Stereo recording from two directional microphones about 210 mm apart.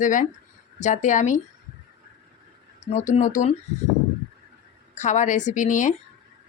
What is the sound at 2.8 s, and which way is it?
Speech, 35° left (ahead or behind).